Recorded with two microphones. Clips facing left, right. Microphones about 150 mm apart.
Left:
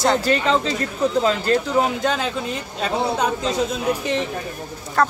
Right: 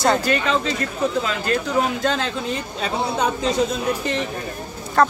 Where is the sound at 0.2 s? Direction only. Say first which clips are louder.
Left 2 dB; 30° left (ahead or behind).